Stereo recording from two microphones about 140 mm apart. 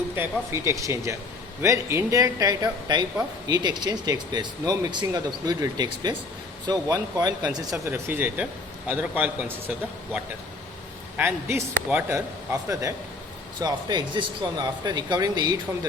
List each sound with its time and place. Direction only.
0.2 s speech: 20° right (ahead or behind)
7.9 s a man's voice: 15° right (ahead or behind)
11.2 s speech: 15° right (ahead or behind)